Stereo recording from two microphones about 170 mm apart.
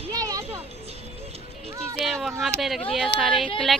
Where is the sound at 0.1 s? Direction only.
20° right (ahead or behind).